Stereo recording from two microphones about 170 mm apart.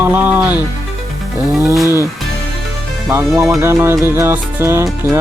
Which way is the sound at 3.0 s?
15° right (ahead or behind).